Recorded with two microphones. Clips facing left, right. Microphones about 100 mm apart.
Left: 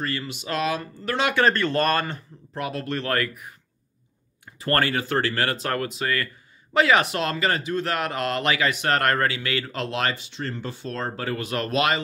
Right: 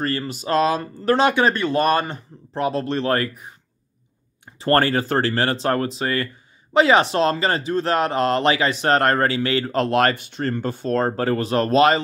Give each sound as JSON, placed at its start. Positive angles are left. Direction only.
{"t": 0.0, "sound": "speech", "side_deg": -40}
{"t": 1.3, "sound": "speech", "side_deg": -15}
{"t": 2.5, "sound": "speech", "side_deg": -30}
{"t": 4.6, "sound": "speech", "side_deg": -30}